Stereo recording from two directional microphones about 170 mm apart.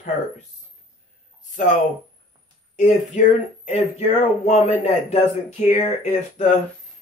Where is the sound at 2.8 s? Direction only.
45° left (ahead or behind).